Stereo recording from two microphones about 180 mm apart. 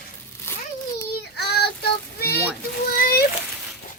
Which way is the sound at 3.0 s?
55° left (ahead or behind).